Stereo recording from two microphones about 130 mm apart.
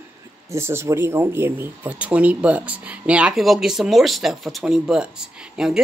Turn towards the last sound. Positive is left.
turn(degrees=-5)  # may be behind; listen again after turning